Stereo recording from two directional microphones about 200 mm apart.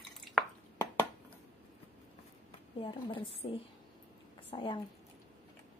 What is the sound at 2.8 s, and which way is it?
A woman's voice, 25° left (ahead or behind).